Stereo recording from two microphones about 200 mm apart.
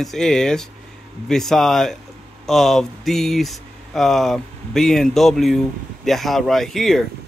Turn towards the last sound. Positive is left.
turn(degrees=0)  # may be behind; listen again after turning